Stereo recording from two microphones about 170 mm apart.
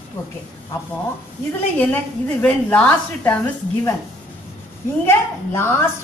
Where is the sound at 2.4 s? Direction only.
10° left (ahead or behind).